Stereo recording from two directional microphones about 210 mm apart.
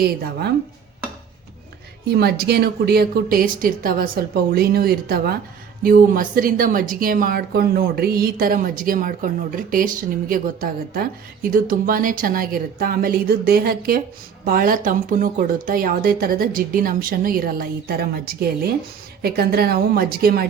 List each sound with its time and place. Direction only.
0.0 s a woman's voice: 50° right (ahead or behind)
2.0 s a woman's voice: 50° right (ahead or behind)